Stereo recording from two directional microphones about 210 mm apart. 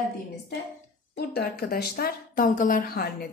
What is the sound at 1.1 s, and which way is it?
A woman's voice, 50° left (ahead or behind).